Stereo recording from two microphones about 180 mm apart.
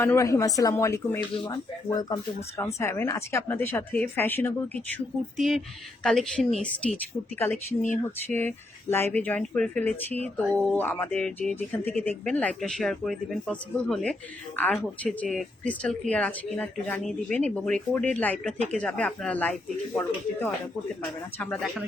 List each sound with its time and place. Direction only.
0.0 s speech: 15° left (ahead or behind)
5.4 s a woman's voice: centre (ahead or behind)